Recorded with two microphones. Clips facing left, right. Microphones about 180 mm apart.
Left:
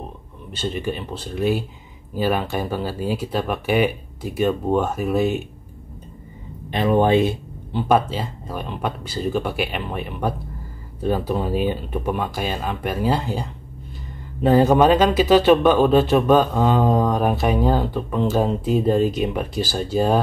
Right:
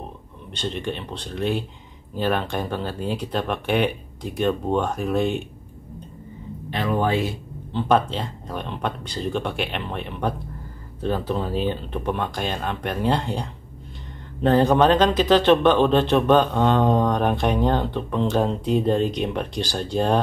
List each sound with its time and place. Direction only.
0.5 s speech: 5° left (ahead or behind)
6.7 s speech: 20° left (ahead or behind)
7.9 s speech: 5° left (ahead or behind)